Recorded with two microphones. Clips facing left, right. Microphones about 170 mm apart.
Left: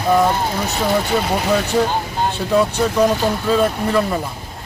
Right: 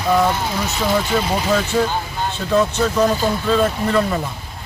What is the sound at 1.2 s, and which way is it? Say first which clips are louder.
Speech: left 1 dB; 60° left (ahead or behind).